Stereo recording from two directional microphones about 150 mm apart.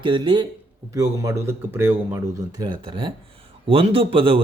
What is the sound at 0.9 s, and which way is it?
A man's voice, 20° right (ahead or behind).